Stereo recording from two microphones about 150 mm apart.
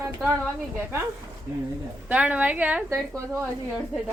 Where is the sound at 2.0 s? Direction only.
10° right (ahead or behind).